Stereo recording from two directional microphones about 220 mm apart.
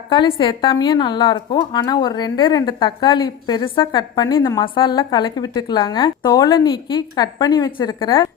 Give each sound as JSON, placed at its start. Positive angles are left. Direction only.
{"t": 0.1, "sound": "a woman's voice", "side_deg": 20}